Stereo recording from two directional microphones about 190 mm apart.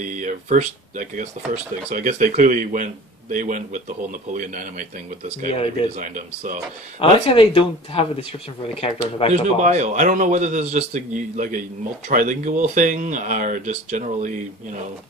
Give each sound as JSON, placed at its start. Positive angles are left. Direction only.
{"t": 0.0, "sound": "speech", "side_deg": -40}
{"t": 5.9, "sound": "speech", "side_deg": -45}
{"t": 7.0, "sound": "speech", "side_deg": 30}
{"t": 9.3, "sound": "a man's voice", "side_deg": -35}